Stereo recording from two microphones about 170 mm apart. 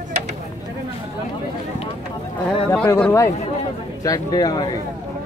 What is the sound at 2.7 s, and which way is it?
A man's voice, 10° left (ahead or behind).